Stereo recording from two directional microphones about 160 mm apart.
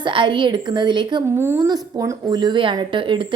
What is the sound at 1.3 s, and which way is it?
A woman's voice, 15° right (ahead or behind).